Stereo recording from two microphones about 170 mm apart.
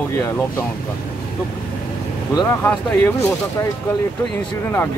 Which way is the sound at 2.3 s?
20° left (ahead or behind).